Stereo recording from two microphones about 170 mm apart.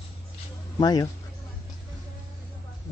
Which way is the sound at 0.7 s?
25° left (ahead or behind).